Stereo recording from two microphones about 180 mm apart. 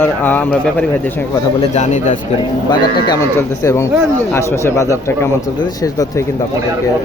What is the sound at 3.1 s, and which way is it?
Speech, 15° left (ahead or behind).